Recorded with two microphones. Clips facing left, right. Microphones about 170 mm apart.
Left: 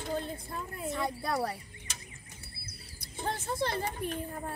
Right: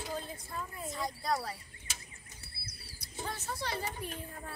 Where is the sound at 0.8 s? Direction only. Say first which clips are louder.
Left 7 dB; 60° left (ahead or behind).